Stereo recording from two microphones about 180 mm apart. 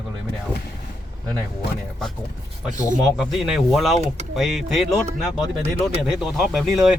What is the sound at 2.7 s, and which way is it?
Speech, 45° right (ahead or behind).